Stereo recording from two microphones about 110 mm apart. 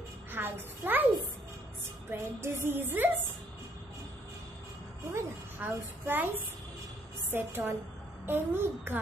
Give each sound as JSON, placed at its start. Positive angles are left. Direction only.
{"t": 0.3, "sound": "a child's voice", "side_deg": -20}
{"t": 2.0, "sound": "a child's voice", "side_deg": -20}
{"t": 5.1, "sound": "a child's voice", "side_deg": -20}